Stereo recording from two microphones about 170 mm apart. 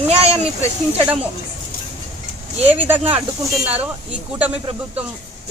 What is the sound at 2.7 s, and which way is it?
Speech, 10° right (ahead or behind).